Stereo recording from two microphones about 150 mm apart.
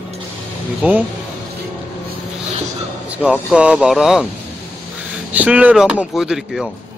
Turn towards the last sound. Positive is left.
turn(degrees=-5)  # may be behind; listen again after turning